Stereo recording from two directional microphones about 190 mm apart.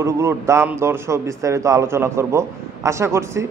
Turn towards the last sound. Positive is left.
turn(degrees=-15)  # may be behind; listen again after turning